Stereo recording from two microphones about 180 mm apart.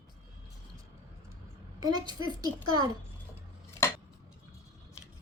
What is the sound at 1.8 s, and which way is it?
Speech, 20° right (ahead or behind).